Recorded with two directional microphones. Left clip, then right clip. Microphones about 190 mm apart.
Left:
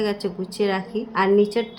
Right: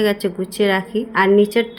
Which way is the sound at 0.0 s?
15° right (ahead or behind).